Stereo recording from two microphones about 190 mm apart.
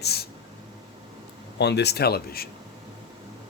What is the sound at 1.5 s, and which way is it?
Speech, 60° left (ahead or behind).